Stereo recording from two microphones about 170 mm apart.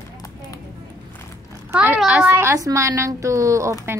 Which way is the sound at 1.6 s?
10° right (ahead or behind).